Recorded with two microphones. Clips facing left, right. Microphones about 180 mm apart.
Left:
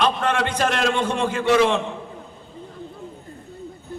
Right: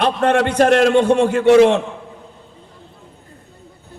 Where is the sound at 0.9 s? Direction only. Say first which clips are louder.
Right 9 dB; 65° right (ahead or behind).